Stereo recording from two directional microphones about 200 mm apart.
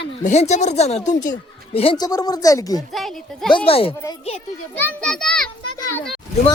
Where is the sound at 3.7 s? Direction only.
30° left (ahead or behind).